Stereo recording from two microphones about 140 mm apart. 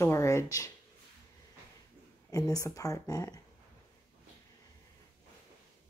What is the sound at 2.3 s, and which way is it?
Speech, 25° left (ahead or behind).